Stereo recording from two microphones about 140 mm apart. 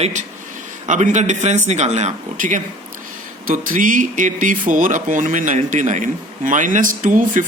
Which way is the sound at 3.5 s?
75° right (ahead or behind).